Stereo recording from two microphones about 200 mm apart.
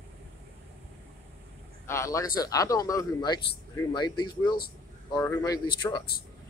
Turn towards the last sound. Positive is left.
turn(degrees=25)  # may be behind; listen again after turning